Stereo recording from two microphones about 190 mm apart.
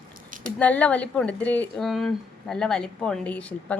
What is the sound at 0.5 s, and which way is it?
A woman's voice, 5° left (ahead or behind).